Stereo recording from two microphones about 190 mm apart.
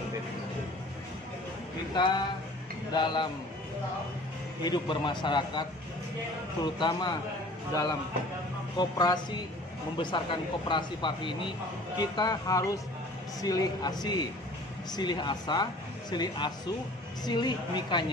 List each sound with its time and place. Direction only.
2.0 s speech: 25° left (ahead or behind)
4.6 s speech: 25° left (ahead or behind)
8.7 s speech: 20° left (ahead or behind)